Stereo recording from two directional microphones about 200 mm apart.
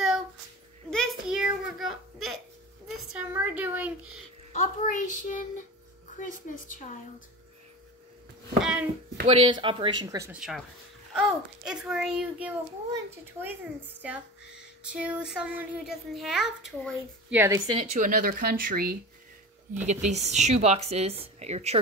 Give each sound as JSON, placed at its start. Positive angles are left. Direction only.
{"t": 0.8, "sound": "child singing", "side_deg": 5}
{"t": 3.1, "sound": "a sound", "side_deg": -5}
{"t": 4.6, "sound": "a child's voice", "side_deg": 40}
{"t": 8.5, "sound": "a sound", "side_deg": 0}
{"t": 9.2, "sound": "speech", "side_deg": -30}
{"t": 10.3, "sound": "a child's voice", "side_deg": 0}
{"t": 17.6, "sound": "speech", "side_deg": -30}
{"t": 19.9, "sound": "speech", "side_deg": -35}